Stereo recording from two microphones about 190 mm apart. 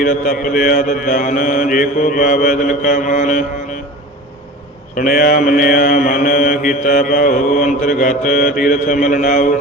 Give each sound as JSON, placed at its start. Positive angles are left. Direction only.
{"t": 0.0, "sound": "mantra", "side_deg": 45}
{"t": 4.9, "sound": "mantra", "side_deg": 50}